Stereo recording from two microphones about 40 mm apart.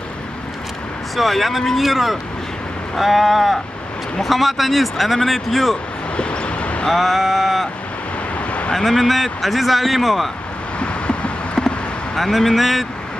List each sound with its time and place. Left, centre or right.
1.1 s speech: centre
6.1 s vehicle: left
6.9 s speech: centre
8.4 s vehicle: left
8.7 s speech: centre
10.8 s a sound: left
12.2 s speech: centre